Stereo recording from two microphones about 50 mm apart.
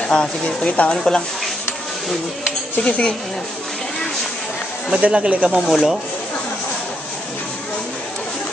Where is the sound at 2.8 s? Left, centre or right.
Left.